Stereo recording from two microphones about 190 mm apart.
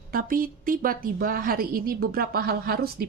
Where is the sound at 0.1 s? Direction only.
45° right (ahead or behind).